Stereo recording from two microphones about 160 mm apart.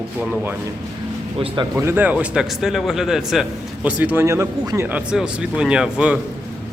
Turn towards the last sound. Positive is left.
turn(degrees=-5)  # may be behind; listen again after turning